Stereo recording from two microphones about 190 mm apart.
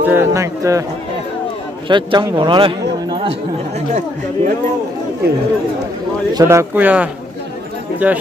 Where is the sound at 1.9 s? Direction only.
25° right (ahead or behind).